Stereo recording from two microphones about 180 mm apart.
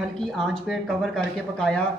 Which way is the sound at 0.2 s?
Centre (ahead or behind).